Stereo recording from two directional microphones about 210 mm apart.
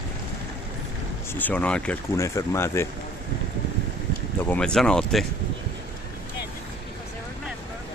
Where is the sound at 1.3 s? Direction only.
10° left (ahead or behind).